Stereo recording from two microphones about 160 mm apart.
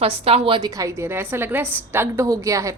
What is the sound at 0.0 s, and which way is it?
A woman's voice, 40° right (ahead or behind).